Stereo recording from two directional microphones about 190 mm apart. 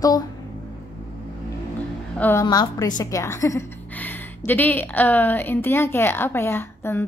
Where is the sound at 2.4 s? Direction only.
20° left (ahead or behind).